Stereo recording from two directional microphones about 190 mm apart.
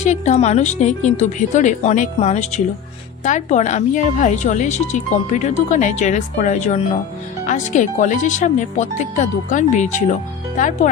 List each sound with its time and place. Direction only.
0.0 s speech: 35° left (ahead or behind)